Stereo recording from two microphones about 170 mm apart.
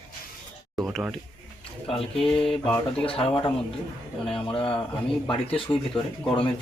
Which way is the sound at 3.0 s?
30° left (ahead or behind).